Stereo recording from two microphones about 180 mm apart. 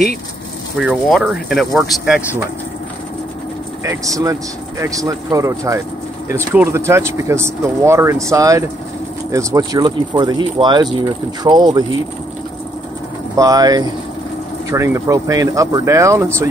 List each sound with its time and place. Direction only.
0.7 s speech: 5° right (ahead or behind)
3.8 s speech: 20° right (ahead or behind)
13.4 s speech: 20° right (ahead or behind)